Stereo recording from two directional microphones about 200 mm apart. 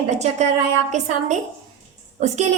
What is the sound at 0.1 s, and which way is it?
A woman's voice, 35° right (ahead or behind).